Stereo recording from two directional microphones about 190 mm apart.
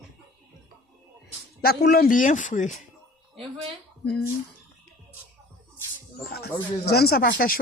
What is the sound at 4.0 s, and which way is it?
Speech, 60° left (ahead or behind).